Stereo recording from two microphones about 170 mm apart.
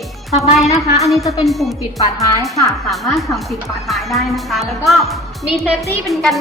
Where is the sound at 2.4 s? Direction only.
Centre (ahead or behind).